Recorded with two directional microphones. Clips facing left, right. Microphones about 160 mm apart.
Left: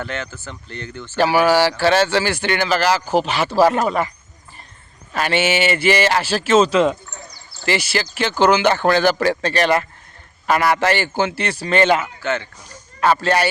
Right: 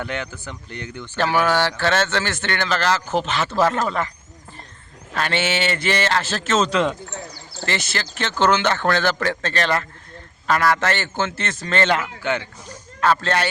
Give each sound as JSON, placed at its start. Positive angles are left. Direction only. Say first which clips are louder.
{"t": 0.0, "sound": "speech", "louder": "even", "side_deg": -15}
{"t": 1.1, "sound": "speech", "louder": "left 4 dB", "side_deg": 10}
{"t": 5.1, "sound": "speech", "louder": "left 4 dB", "side_deg": 5}
{"t": 12.2, "sound": "speech", "louder": "left 1 dB", "side_deg": -15}
{"t": 13.0, "sound": "speech", "louder": "left 3 dB", "side_deg": 10}